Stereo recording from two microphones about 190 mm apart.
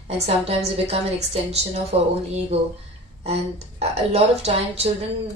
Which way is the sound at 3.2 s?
35° right (ahead or behind).